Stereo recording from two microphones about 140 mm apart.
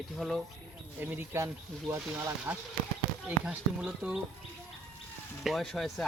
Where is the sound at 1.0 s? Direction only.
15° right (ahead or behind).